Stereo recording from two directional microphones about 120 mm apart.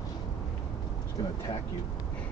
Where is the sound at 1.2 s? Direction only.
40° left (ahead or behind).